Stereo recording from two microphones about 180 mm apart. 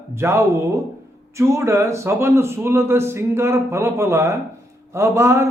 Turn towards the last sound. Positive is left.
turn(degrees=-15)  # may be behind; listen again after turning